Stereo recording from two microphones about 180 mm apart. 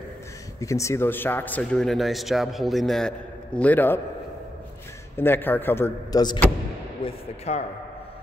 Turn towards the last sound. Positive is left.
turn(degrees=35)  # may be behind; listen again after turning